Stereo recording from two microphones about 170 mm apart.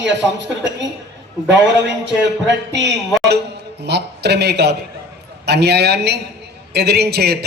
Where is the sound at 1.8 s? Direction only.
90° right.